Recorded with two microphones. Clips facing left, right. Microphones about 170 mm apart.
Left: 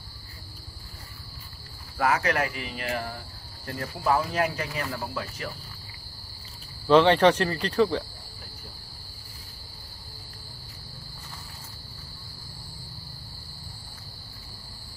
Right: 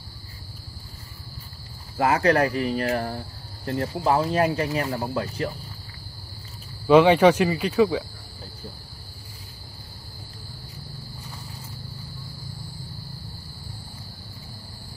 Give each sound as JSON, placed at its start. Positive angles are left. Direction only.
{"t": 2.0, "sound": "speech", "side_deg": -30}
{"t": 6.9, "sound": "speech", "side_deg": -10}